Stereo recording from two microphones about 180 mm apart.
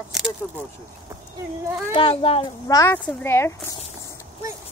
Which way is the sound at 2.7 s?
15° left (ahead or behind).